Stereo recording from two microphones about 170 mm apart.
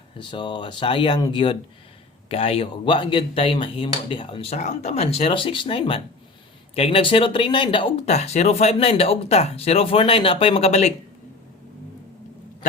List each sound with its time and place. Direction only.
0.2 s speech: 25° left (ahead or behind)